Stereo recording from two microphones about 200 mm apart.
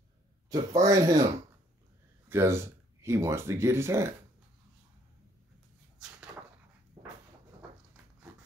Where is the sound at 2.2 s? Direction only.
10° right (ahead or behind).